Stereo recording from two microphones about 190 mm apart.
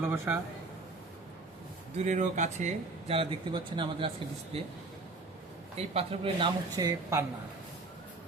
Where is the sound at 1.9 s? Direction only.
40° right (ahead or behind).